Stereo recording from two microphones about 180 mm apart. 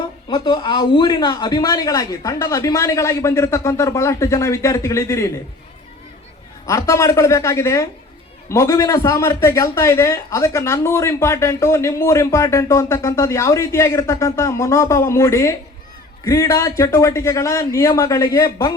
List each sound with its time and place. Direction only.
0.3 s a man's voice: 25° left (ahead or behind)
6.7 s a man's voice: 15° left (ahead or behind)